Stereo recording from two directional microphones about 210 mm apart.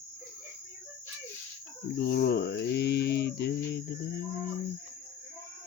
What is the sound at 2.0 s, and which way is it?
Cricket, 45° left (ahead or behind).